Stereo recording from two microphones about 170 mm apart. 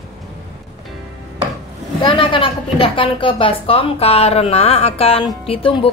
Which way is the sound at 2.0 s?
30° left (ahead or behind).